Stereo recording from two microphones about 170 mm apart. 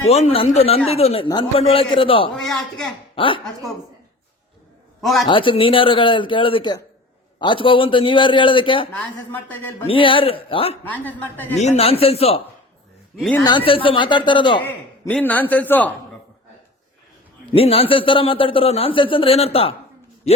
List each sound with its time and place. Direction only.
0.1 s a man's voice: 40° left (ahead or behind)
2.3 s speech: centre (ahead or behind)
3.2 s a man's voice: 30° left (ahead or behind)
3.4 s speech: centre (ahead or behind)
4.9 s a man's voice: centre (ahead or behind)
5.3 s a man's voice: 30° left (ahead or behind)
9.3 s a man's voice: 10° left (ahead or behind)
9.8 s a man's voice: 30° left (ahead or behind)
10.8 s a man's voice: 10° left (ahead or behind)
11.6 s a man's voice: 40° left (ahead or behind)
13.7 s a man's voice: 30° left (ahead or behind)
15.1 s a man's voice: 10° left (ahead or behind)
17.5 s a man's voice: 35° left (ahead or behind)